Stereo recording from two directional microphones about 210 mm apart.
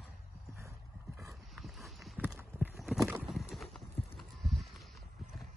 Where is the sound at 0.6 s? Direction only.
15° right (ahead or behind).